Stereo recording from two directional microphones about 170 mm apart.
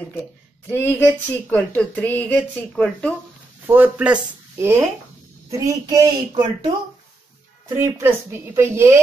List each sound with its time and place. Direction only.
0.7 s speech: 10° left (ahead or behind)
3.6 s speech: 10° right (ahead or behind)
7.7 s speech: 15° right (ahead or behind)